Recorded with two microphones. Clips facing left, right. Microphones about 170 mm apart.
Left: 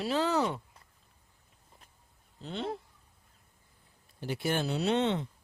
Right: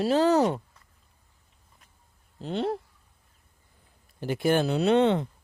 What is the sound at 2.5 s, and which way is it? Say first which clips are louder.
Speech: right 7 dB; 45° right (ahead or behind).